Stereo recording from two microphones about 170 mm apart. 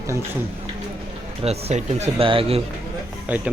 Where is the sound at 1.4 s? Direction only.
35° right (ahead or behind).